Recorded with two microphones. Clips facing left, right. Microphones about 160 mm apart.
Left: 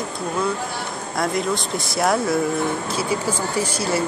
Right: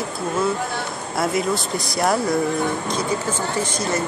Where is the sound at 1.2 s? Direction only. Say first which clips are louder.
Right 1 dB; 5° right (ahead or behind).